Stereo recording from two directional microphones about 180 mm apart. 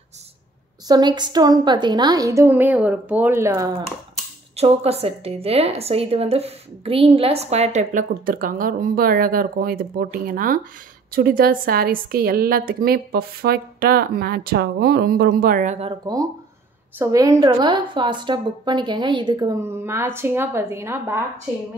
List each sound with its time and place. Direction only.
0.8 s a woman's voice: 25° right (ahead or behind)
4.6 s a woman's voice: 35° right (ahead or behind)
15.9 s a woman's voice: 20° right (ahead or behind)